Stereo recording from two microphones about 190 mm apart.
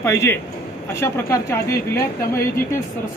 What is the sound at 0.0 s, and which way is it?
A woman's voice, 15° left (ahead or behind).